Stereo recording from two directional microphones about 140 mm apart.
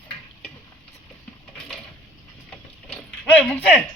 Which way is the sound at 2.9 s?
10° left (ahead or behind).